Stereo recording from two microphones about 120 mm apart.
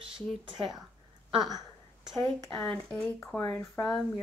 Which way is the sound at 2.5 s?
10° left (ahead or behind).